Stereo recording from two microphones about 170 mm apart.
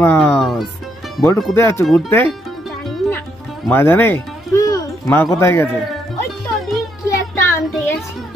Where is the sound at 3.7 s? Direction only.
15° left (ahead or behind).